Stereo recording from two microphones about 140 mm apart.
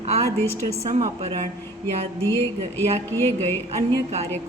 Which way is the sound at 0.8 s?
45° right (ahead or behind).